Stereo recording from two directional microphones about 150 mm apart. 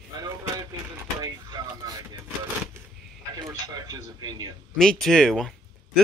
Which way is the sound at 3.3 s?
25° right (ahead or behind).